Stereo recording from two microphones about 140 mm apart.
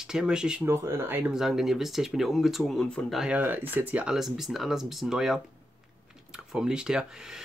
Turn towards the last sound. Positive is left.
turn(degrees=-5)  # may be behind; listen again after turning